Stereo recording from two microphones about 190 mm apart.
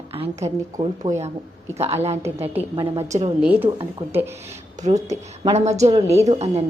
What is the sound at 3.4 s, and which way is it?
Speech, 10° right (ahead or behind).